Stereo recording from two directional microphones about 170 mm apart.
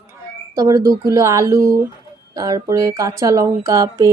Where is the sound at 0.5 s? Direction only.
20° right (ahead or behind).